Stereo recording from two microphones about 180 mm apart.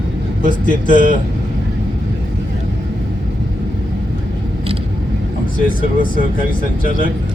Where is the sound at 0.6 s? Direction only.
45° left (ahead or behind).